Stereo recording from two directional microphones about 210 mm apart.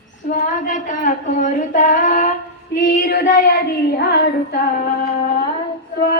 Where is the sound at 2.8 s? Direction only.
40° left (ahead or behind).